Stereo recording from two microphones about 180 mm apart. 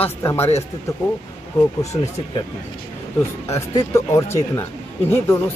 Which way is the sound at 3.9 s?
15° left (ahead or behind).